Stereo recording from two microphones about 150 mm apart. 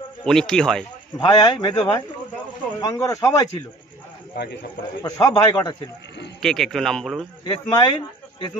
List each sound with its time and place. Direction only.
0.2 s speech: 5° left (ahead or behind)
1.2 s a man's voice: 30° left (ahead or behind)
4.4 s a man's voice: 90° left
5.0 s a man's voice: 25° left (ahead or behind)
6.4 s a man's voice: 5° left (ahead or behind)
7.4 s a man's voice: 35° left (ahead or behind)